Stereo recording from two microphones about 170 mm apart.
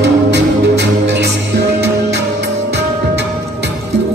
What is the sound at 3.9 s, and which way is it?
Music, 80° right.